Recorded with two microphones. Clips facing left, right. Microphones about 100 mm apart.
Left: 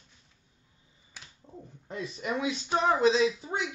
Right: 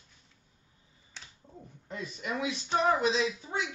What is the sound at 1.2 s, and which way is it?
Finger snapping, 10° left (ahead or behind).